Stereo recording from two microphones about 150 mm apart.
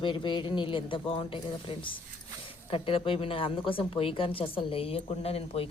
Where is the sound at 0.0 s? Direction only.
30° left (ahead or behind).